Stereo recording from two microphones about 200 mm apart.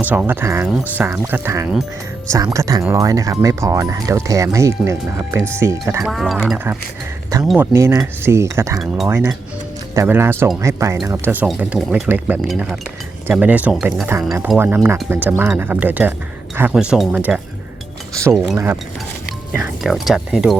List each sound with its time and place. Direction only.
0.0 s speech: 10° right (ahead or behind)
6.1 s speech: centre (ahead or behind)
18.5 s speech: 10° right (ahead or behind)
19.8 s speech: centre (ahead or behind)